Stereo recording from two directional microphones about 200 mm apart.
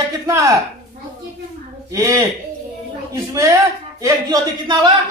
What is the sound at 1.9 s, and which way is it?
A woman's voice, 15° right (ahead or behind).